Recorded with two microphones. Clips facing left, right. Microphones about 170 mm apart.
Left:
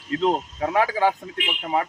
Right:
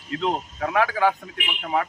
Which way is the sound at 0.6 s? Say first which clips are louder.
Left 1 dB; 20° left (ahead or behind).